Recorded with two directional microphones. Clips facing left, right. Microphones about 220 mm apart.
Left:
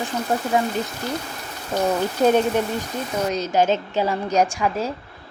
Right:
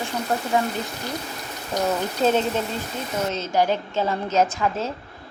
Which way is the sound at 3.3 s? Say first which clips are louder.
Left 3 dB; 15° left (ahead or behind).